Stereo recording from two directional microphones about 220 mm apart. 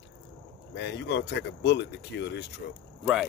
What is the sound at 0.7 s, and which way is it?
Speech, 50° left (ahead or behind).